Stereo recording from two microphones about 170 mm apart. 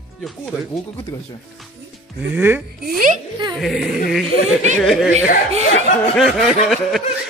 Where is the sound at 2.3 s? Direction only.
10° right (ahead or behind).